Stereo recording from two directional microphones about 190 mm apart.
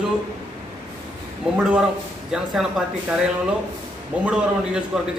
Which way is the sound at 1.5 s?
5° right (ahead or behind).